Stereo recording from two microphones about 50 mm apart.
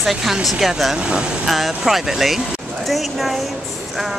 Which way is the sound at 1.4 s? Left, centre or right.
Centre.